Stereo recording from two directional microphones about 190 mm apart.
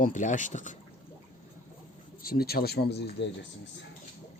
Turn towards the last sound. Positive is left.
turn(degrees=60)  # may be behind; listen again after turning